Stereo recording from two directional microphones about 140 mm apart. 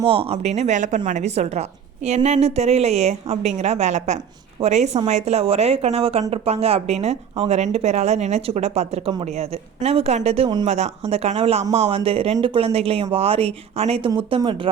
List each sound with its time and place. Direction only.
0.0 s speech: 40° right (ahead or behind)